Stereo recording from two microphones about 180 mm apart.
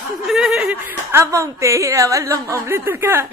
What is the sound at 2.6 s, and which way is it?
Speech, 15° right (ahead or behind).